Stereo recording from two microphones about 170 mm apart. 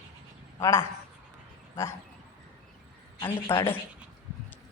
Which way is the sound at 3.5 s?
15° left (ahead or behind).